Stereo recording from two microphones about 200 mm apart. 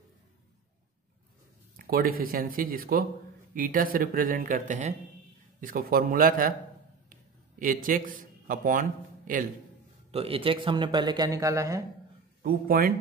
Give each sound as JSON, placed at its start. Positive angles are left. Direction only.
{"t": 1.8, "sound": "speech", "side_deg": -50}
{"t": 7.1, "sound": "a sound", "side_deg": -45}
{"t": 10.1, "sound": "speech", "side_deg": -30}
{"t": 12.4, "sound": "speech", "side_deg": -50}